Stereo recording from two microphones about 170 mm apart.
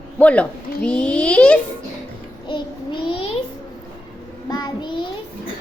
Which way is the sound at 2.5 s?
30° left (ahead or behind).